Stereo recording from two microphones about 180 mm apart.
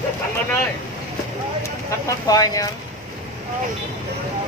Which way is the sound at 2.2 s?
20° left (ahead or behind).